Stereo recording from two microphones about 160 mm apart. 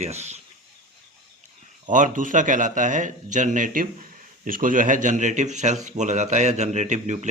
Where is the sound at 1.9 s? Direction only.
55° right (ahead or behind).